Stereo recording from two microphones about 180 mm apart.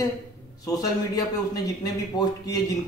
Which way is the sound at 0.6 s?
20° left (ahead or behind).